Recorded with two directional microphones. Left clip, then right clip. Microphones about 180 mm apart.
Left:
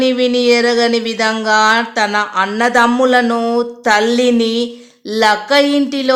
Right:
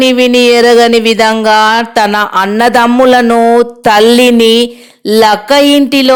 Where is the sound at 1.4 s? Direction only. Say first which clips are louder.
Right 1 dB; 40° right (ahead or behind).